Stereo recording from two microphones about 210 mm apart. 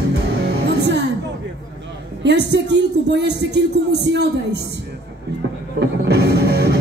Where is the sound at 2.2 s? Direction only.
55° right (ahead or behind).